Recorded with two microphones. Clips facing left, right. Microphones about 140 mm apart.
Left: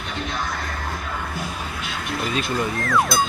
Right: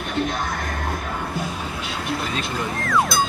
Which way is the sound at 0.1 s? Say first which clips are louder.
Right 4 dB; 50° right (ahead or behind).